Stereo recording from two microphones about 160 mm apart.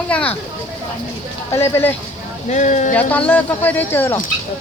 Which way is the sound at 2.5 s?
50° left (ahead or behind).